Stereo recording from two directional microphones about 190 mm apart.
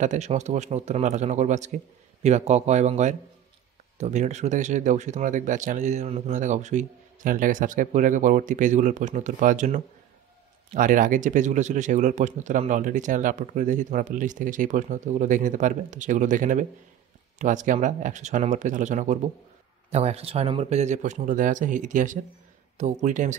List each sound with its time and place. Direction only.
0.0 s speech: 40° right (ahead or behind)